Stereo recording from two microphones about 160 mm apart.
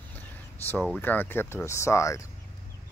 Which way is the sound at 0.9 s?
10° left (ahead or behind).